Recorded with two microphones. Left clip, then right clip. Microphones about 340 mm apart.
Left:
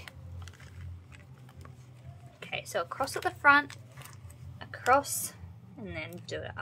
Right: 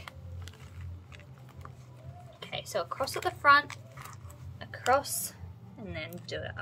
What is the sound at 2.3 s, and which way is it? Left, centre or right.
Speech, centre.